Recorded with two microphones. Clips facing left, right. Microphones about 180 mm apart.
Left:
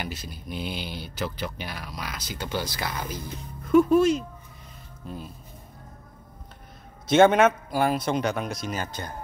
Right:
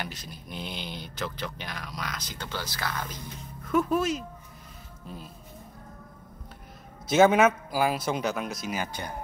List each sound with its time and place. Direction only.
0.0 s speech: 5° left (ahead or behind)
3.6 s speech: centre (ahead or behind)
7.1 s speech: 5° right (ahead or behind)